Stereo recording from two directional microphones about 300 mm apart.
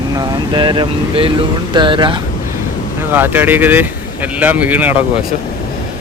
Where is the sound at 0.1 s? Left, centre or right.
Centre.